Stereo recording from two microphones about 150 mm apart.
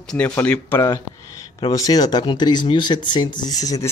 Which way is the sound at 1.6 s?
25° left (ahead or behind).